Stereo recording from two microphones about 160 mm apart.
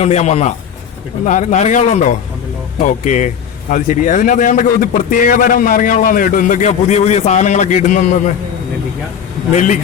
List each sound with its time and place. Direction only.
0.0 s a man's voice: 45° left (ahead or behind)
9.5 s a man's voice: 45° left (ahead or behind)